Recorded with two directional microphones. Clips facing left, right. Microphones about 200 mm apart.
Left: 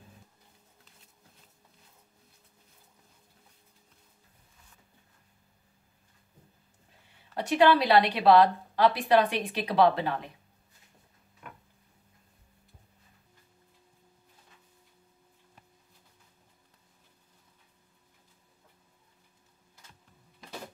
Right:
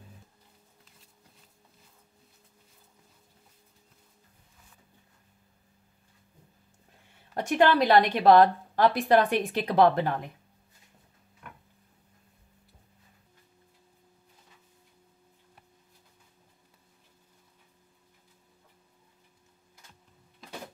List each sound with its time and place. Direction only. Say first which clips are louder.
7.3 s a woman's voice: even; 45° right (ahead or behind)